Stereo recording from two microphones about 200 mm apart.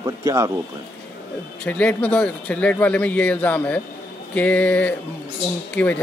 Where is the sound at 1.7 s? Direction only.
5° left (ahead or behind).